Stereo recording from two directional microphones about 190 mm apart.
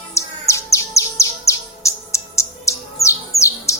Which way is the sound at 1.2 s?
15° left (ahead or behind).